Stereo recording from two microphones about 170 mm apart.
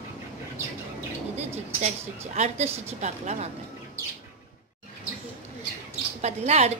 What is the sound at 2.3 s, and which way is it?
A woman's voice, 40° right (ahead or behind).